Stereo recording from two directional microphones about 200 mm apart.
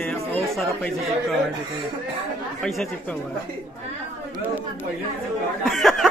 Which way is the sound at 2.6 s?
Centre (ahead or behind).